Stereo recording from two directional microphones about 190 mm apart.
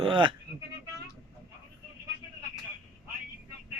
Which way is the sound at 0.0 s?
25° right (ahead or behind).